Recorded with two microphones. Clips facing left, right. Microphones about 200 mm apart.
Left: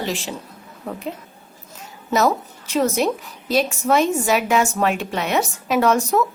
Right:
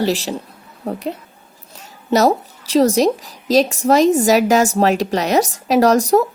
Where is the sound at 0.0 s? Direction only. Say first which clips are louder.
Right 7 dB; 35° right (ahead or behind).